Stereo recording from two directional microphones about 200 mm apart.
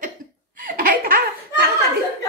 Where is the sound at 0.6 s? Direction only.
45° right (ahead or behind).